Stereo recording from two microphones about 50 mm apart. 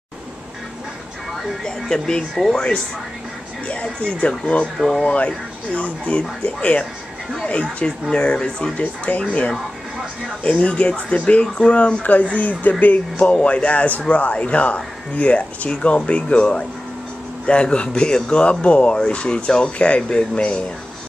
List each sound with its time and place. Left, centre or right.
1.3 s speech: centre
3.6 s speech: left
4.7 s speech: centre
5.0 s speech: left
8.1 s speech: centre
10.4 s speech: left